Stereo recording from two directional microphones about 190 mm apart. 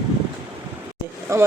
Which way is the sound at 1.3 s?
15° right (ahead or behind).